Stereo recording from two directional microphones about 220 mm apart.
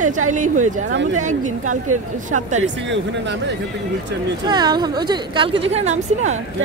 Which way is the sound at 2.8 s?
55° right (ahead or behind).